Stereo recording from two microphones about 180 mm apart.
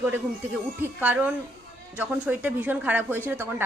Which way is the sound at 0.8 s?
10° right (ahead or behind).